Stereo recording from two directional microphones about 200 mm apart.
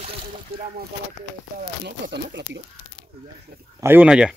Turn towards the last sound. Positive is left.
turn(degrees=-5)  # may be behind; listen again after turning